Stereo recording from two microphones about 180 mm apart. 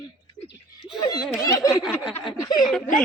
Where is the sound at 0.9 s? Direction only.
20° left (ahead or behind).